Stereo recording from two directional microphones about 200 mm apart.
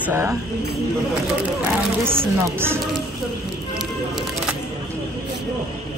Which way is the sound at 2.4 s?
10° right (ahead or behind).